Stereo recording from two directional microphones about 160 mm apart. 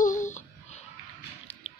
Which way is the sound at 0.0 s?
50° left (ahead or behind).